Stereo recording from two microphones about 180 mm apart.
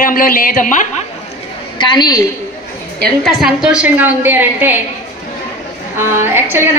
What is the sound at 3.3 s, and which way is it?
A woman's voice, centre (ahead or behind).